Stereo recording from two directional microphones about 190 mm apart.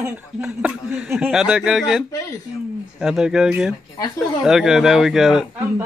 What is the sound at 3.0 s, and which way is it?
Speech, 5° right (ahead or behind).